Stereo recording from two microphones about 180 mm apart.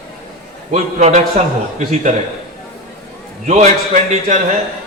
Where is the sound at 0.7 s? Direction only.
40° right (ahead or behind).